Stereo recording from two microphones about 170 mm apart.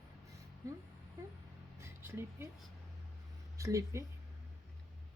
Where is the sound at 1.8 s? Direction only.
15° right (ahead or behind).